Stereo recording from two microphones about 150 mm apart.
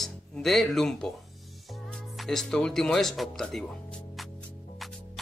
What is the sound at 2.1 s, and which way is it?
Speech, centre (ahead or behind).